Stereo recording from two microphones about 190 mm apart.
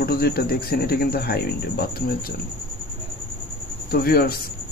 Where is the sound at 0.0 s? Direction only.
55° left (ahead or behind).